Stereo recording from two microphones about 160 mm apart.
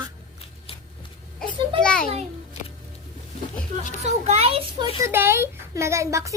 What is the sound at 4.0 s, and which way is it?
Speech, 40° right (ahead or behind).